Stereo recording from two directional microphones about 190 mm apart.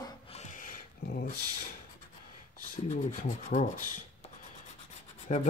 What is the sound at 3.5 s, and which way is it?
Speech, 45° left (ahead or behind).